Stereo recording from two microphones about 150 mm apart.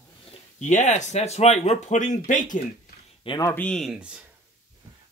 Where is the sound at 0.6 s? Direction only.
55° left (ahead or behind).